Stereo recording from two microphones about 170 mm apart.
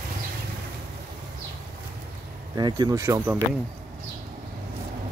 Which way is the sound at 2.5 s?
25° right (ahead or behind).